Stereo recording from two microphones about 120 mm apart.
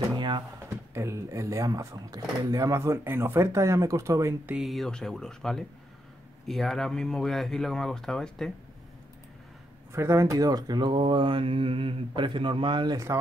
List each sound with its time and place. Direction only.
0.1 s a sound: 40° right (ahead or behind)
0.9 s speech: 25° right (ahead or behind)
4.5 s speech: 5° right (ahead or behind)
9.9 s speech: 25° right (ahead or behind)